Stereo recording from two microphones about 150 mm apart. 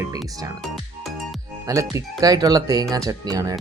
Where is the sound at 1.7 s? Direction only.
20° right (ahead or behind).